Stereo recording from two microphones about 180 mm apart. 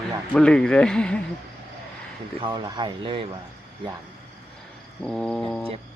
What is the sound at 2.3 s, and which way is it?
Speech, 25° right (ahead or behind).